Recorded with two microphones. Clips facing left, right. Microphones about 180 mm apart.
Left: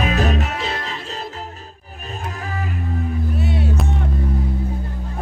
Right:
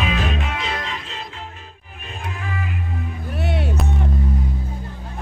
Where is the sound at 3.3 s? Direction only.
65° right (ahead or behind).